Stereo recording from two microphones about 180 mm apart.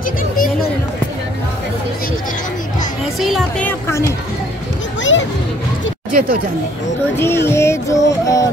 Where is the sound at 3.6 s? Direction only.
15° left (ahead or behind).